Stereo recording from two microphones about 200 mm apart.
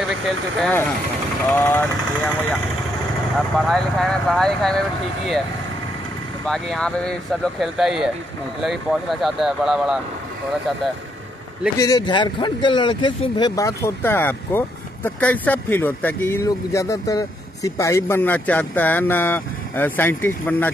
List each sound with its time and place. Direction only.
0.6 s speech: 5° left (ahead or behind)
3.3 s speech: centre (ahead or behind)
6.4 s speech: centre (ahead or behind)
9.2 s speech: centre (ahead or behind)
11.8 s speech: 20° left (ahead or behind)